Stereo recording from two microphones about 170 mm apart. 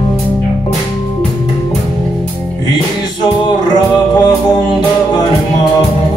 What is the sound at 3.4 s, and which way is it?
Music, 25° left (ahead or behind).